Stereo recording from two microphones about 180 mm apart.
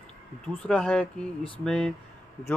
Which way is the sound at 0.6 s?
5° left (ahead or behind).